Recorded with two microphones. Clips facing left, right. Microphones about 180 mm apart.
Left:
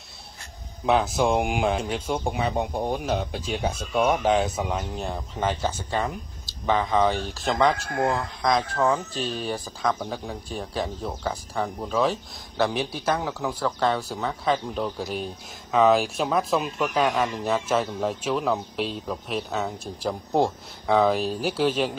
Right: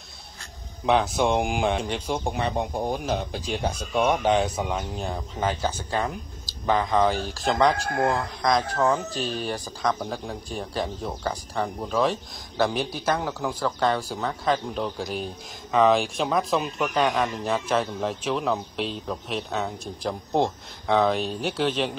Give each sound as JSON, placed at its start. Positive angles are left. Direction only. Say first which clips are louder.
{"t": 0.8, "sound": "speech", "louder": "even", "side_deg": 0}
{"t": 7.7, "sound": "speech", "louder": "right 1 dB", "side_deg": -40}
{"t": 8.1, "sound": "speech", "louder": "left 1 dB", "side_deg": 0}